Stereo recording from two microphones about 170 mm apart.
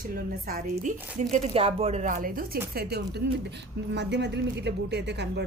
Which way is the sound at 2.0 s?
55° right (ahead or behind).